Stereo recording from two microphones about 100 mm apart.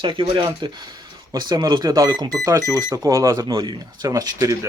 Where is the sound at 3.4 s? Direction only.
45° right (ahead or behind).